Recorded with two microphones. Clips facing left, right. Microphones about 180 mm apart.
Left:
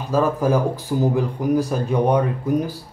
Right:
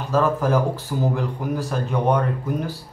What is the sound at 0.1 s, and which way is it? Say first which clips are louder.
Speech: left 1 dB; 10° left (ahead or behind).